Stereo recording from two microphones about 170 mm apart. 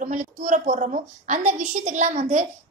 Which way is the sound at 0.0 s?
45° right (ahead or behind).